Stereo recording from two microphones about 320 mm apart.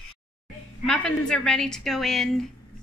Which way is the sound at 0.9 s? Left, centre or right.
Centre.